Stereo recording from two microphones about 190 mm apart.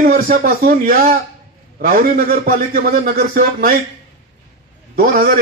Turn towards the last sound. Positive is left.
turn(degrees=-45)  # may be behind; listen again after turning